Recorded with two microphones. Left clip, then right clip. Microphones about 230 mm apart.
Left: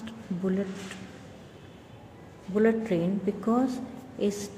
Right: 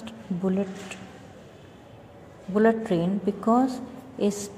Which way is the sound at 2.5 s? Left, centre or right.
Centre.